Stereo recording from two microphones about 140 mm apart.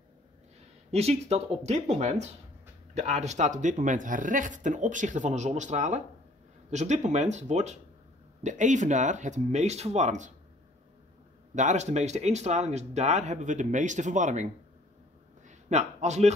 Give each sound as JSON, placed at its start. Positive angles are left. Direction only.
{"t": 0.9, "sound": "speech", "side_deg": -50}
{"t": 11.5, "sound": "speech", "side_deg": -60}
{"t": 15.4, "sound": "a sound", "side_deg": -55}